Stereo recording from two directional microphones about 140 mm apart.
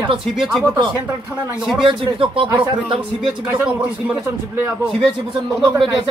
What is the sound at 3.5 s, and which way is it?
A man's voice, 10° right (ahead or behind).